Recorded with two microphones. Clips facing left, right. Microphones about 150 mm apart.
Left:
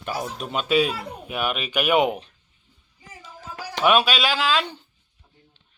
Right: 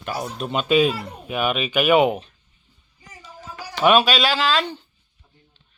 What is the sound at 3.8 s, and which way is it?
Speech, 5° left (ahead or behind).